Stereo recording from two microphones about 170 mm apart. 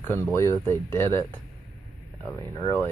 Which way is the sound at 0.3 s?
15° left (ahead or behind).